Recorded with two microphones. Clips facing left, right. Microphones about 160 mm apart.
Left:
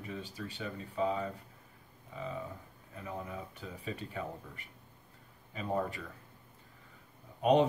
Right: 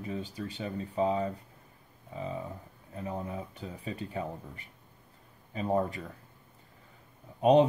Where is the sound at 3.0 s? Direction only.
35° right (ahead or behind).